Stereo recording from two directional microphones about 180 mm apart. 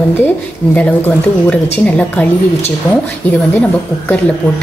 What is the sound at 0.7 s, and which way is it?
A woman's voice, 10° left (ahead or behind).